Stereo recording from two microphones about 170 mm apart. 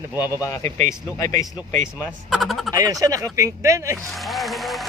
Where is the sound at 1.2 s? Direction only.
20° left (ahead or behind).